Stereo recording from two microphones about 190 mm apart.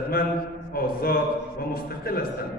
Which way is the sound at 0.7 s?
50° left (ahead or behind).